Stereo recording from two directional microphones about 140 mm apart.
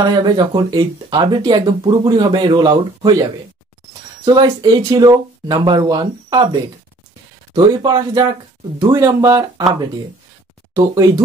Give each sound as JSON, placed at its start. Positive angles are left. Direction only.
{"t": 0.0, "sound": "speech", "side_deg": -30}
{"t": 10.7, "sound": "speech", "side_deg": -25}